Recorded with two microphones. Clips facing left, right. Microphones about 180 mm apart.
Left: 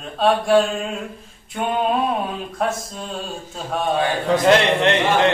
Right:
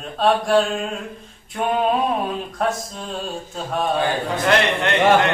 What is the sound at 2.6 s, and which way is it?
Chant, centre (ahead or behind).